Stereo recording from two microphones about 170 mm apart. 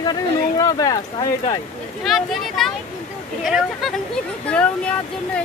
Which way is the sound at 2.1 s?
Centre (ahead or behind).